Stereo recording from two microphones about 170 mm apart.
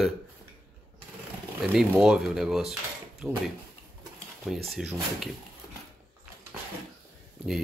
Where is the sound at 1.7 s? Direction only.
5° right (ahead or behind).